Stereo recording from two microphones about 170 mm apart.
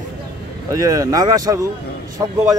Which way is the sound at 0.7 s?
20° right (ahead or behind).